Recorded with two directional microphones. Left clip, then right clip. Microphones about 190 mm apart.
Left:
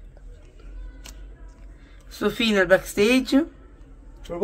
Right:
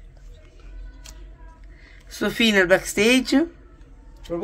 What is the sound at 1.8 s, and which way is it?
Speech, 15° right (ahead or behind).